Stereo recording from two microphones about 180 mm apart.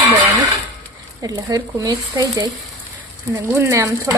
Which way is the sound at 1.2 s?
20° right (ahead or behind).